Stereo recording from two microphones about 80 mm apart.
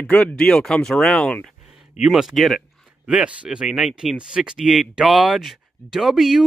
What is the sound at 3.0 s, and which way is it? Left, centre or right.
Speech, centre.